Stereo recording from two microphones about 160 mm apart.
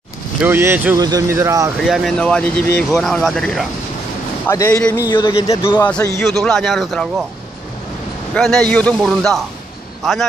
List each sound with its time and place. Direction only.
0.4 s speech: 15° right (ahead or behind)
1.8 s speech: centre (ahead or behind)
4.5 s speech: 20° left (ahead or behind)
5.8 s a man's voice: 5° left (ahead or behind)
8.4 s speech: 5° left (ahead or behind)